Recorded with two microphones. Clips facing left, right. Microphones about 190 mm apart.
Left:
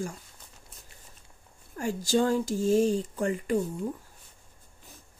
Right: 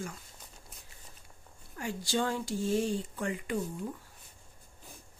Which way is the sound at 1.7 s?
45° left (ahead or behind).